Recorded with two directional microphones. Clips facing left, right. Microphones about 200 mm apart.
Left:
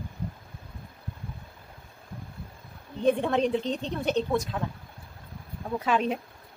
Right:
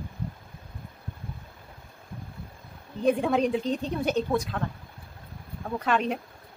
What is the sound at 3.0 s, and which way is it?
A woman's voice, 5° right (ahead or behind).